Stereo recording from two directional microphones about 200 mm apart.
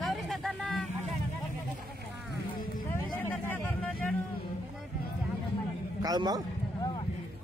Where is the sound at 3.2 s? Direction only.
10° left (ahead or behind).